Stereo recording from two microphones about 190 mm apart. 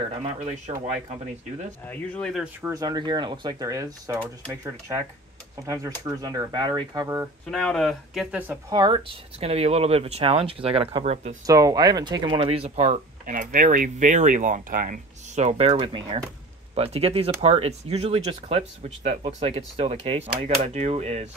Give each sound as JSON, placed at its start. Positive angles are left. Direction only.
{"t": 0.0, "sound": "speech", "side_deg": -35}
{"t": 1.9, "sound": "speech", "side_deg": 5}
{"t": 2.6, "sound": "speech", "side_deg": -20}
{"t": 7.5, "sound": "speech", "side_deg": 5}
{"t": 8.7, "sound": "speech", "side_deg": -25}
{"t": 11.4, "sound": "speech", "side_deg": -20}